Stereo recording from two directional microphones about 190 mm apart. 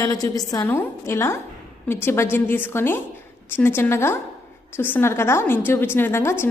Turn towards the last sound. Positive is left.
turn(degrees=15)  # may be behind; listen again after turning